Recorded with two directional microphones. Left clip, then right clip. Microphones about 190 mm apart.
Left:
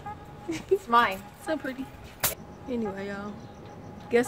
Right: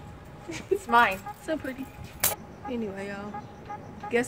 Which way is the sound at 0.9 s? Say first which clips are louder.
Right 2 dB; 25° right (ahead or behind).